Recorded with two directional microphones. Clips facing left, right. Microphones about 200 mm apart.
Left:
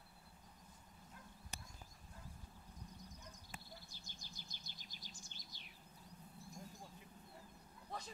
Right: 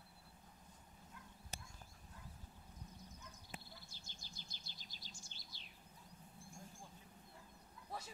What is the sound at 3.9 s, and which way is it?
Bird, 15° left (ahead or behind).